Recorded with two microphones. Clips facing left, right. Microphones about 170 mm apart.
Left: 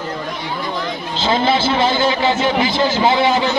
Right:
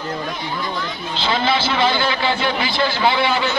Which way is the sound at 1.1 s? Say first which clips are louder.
Left 3 dB; 45° left (ahead or behind).